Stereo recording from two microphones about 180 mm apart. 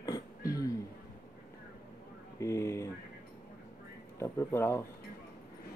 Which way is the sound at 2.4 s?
15° left (ahead or behind).